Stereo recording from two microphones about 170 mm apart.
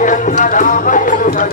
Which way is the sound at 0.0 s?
50° left (ahead or behind).